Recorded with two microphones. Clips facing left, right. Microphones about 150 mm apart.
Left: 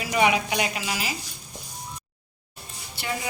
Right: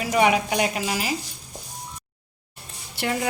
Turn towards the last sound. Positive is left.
turn(degrees=-65)  # may be behind; listen again after turning